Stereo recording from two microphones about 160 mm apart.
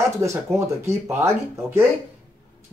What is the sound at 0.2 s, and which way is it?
Speech, 15° right (ahead or behind).